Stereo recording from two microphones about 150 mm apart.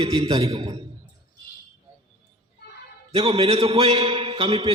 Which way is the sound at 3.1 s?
35° right (ahead or behind).